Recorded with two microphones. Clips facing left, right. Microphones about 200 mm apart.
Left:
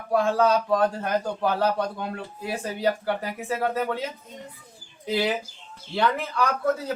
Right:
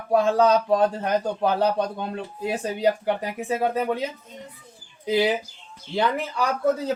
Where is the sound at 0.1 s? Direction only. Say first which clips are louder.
Right 3 dB; 20° right (ahead or behind).